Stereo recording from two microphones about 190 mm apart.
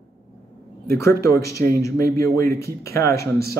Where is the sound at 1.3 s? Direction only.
15° left (ahead or behind).